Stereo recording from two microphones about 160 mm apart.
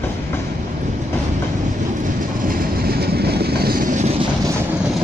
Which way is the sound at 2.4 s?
70° right (ahead or behind).